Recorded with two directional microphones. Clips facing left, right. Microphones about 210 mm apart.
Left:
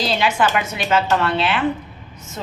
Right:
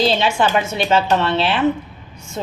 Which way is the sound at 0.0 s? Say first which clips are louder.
Right 2 dB; 25° right (ahead or behind).